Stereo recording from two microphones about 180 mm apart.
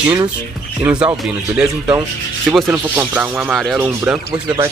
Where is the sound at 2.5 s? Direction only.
10° right (ahead or behind).